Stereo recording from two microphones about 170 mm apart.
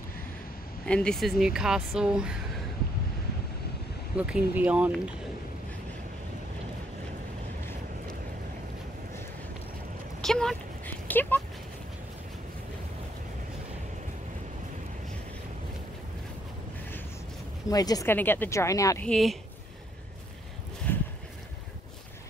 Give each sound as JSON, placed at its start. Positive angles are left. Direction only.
{"t": 0.8, "sound": "speech", "side_deg": 5}
{"t": 4.2, "sound": "speech", "side_deg": -10}
{"t": 10.2, "sound": "a sound", "side_deg": 5}
{"t": 17.6, "sound": "speech", "side_deg": 20}
{"t": 19.0, "sound": "speech", "side_deg": 0}
{"t": 20.8, "sound": "a sound", "side_deg": 5}